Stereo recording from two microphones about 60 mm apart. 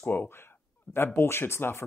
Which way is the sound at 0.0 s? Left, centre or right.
Left.